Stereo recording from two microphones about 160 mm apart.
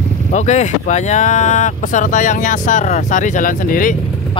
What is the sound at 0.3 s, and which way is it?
Speech, 45° left (ahead or behind).